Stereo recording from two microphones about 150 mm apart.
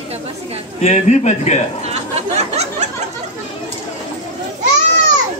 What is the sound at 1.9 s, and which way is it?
Chatter, 45° right (ahead or behind).